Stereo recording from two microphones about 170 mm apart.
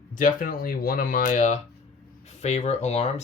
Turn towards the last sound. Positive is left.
turn(degrees=40)  # may be behind; listen again after turning